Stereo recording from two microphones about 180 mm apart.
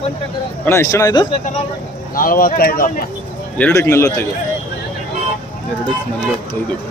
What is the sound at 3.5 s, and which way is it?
Speech, 10° left (ahead or behind).